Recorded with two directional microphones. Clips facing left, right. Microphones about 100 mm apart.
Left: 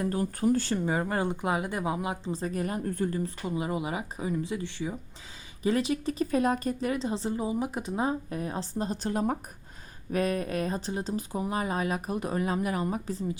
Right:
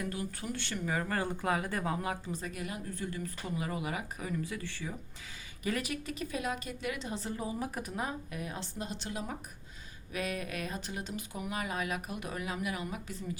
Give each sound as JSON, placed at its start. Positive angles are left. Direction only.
{"t": 0.0, "sound": "speech", "side_deg": 40}
{"t": 2.2, "sound": "speech", "side_deg": 35}
{"t": 3.4, "sound": "speech", "side_deg": 20}